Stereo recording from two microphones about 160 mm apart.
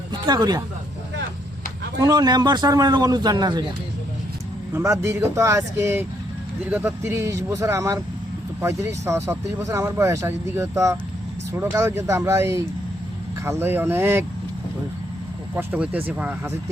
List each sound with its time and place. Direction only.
0.1 s speech: 25° right (ahead or behind)
2.0 s a man's voice: 25° right (ahead or behind)
4.7 s speech: 20° right (ahead or behind)
15.5 s speech: 10° right (ahead or behind)